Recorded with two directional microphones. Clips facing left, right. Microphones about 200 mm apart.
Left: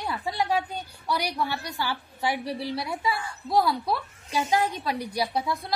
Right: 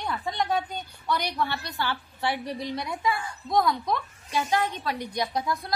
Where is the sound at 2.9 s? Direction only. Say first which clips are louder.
Right 3 dB; 30° left (ahead or behind).